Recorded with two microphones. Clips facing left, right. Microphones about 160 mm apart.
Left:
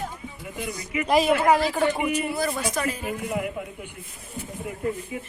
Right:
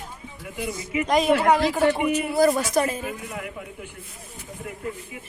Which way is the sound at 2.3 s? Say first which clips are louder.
Right 7 dB; 45° right (ahead or behind).